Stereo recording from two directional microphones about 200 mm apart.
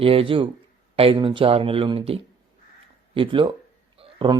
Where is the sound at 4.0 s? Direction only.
25° right (ahead or behind).